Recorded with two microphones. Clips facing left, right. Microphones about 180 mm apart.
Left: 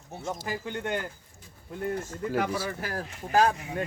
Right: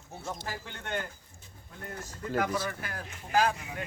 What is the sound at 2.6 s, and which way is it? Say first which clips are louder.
Speech: left 5 dB; 35° left (ahead or behind).